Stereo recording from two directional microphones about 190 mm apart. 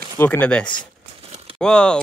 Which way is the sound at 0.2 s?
10° left (ahead or behind).